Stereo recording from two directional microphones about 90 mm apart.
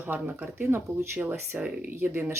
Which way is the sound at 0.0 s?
20° right (ahead or behind).